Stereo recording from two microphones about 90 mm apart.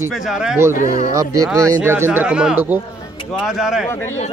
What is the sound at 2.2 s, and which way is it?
Speech, 10° right (ahead or behind).